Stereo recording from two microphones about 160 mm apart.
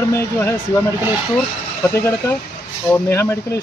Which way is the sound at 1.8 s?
15° left (ahead or behind).